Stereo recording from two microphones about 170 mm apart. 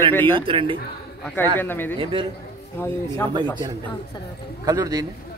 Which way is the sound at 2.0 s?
30° right (ahead or behind).